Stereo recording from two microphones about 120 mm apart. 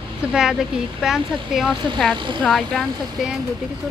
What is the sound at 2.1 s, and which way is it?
Speech, 40° right (ahead or behind).